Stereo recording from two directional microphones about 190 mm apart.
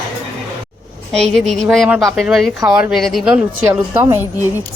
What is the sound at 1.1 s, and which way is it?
A woman's voice, centre (ahead or behind).